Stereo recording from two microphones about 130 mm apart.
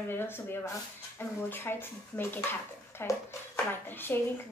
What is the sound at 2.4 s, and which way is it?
Dishes, 20° left (ahead or behind).